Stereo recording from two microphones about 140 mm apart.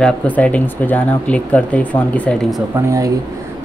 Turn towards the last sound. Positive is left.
turn(degrees=-20)  # may be behind; listen again after turning